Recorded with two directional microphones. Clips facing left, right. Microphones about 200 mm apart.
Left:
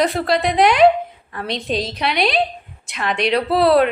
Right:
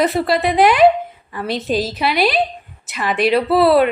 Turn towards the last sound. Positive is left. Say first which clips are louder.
# right 2 dB
turn(degrees=0)  # may be behind; listen again after turning